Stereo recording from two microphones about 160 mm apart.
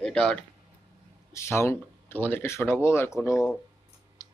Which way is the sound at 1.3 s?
15° left (ahead or behind).